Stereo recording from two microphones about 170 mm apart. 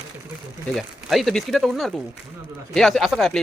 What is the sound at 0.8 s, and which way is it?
Speech, centre (ahead or behind).